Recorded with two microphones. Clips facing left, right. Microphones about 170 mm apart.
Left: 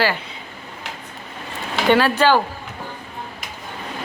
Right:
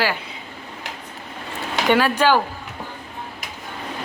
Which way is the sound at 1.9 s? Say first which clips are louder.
Left 2 dB; 10° right (ahead or behind).